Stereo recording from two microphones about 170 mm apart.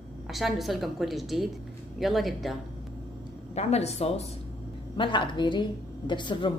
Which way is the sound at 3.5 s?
40° left (ahead or behind).